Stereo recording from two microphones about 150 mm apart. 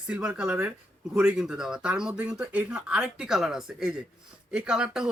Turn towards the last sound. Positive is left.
turn(degrees=-5)  # may be behind; listen again after turning